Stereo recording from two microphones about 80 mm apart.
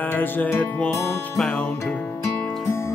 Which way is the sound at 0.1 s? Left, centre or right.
Left.